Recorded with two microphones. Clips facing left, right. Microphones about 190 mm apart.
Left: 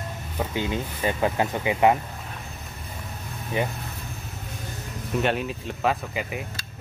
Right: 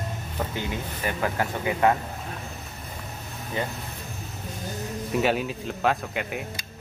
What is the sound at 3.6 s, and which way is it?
Speech, 20° left (ahead or behind).